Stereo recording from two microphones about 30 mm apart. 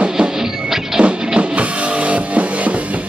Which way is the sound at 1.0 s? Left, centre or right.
Right.